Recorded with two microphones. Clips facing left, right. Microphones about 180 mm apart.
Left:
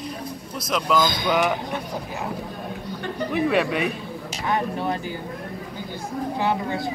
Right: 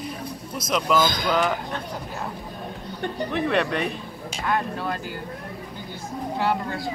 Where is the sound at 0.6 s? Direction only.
Centre (ahead or behind).